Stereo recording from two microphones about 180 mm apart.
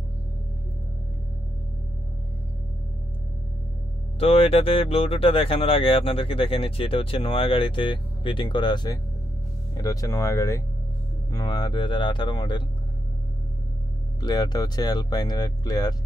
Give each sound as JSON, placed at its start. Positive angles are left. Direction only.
{"t": 4.2, "sound": "speech", "side_deg": 35}
{"t": 14.2, "sound": "speech", "side_deg": 20}